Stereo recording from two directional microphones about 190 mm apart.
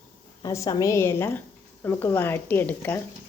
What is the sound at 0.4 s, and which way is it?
Speech, 15° left (ahead or behind).